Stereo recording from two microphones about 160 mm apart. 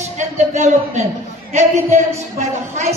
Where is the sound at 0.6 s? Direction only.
45° right (ahead or behind).